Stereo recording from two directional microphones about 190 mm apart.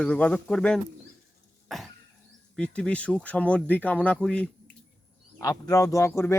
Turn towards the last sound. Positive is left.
turn(degrees=15)  # may be behind; listen again after turning